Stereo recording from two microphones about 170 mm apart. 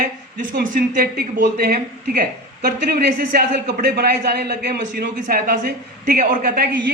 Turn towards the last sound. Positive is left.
turn(degrees=-60)  # may be behind; listen again after turning